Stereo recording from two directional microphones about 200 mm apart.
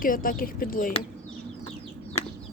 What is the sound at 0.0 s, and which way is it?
Speech, 45° left (ahead or behind).